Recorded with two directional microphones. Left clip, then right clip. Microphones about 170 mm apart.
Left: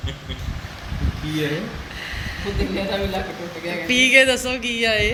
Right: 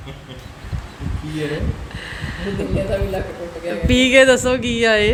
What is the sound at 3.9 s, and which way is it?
Speech, 45° right (ahead or behind).